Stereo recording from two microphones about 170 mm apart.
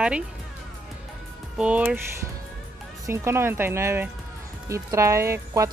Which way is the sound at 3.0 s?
15° right (ahead or behind).